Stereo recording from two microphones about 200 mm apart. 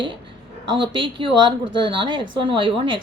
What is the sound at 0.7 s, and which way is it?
A woman's voice, 25° right (ahead or behind).